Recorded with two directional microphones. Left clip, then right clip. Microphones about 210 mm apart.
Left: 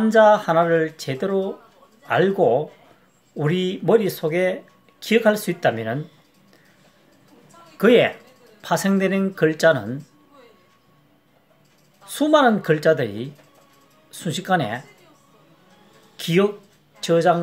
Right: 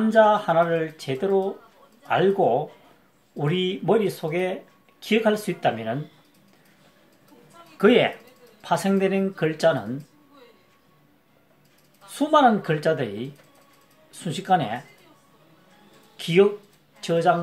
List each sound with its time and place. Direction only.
0.1 s speech: 35° left (ahead or behind)
7.7 s speech: 30° left (ahead or behind)
12.1 s speech: 35° left (ahead or behind)
16.2 s speech: 35° left (ahead or behind)